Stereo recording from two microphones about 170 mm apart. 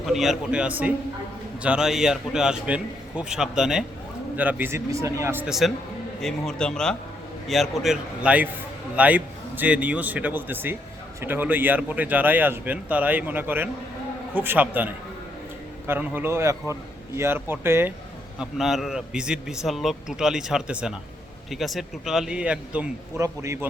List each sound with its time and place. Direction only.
0.0 s a man's voice: centre (ahead or behind)
18.3 s a man's voice: centre (ahead or behind); by 23.6 s 15° right (ahead or behind)